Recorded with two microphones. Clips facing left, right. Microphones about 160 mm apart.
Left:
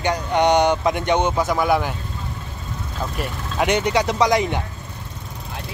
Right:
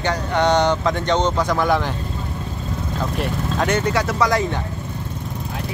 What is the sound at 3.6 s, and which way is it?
Speech, 15° left (ahead or behind).